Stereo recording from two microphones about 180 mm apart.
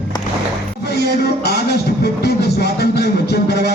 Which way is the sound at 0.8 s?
65° left (ahead or behind).